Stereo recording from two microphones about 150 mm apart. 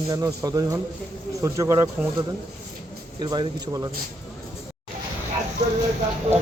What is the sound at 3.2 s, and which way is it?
Speech, 30° right (ahead or behind).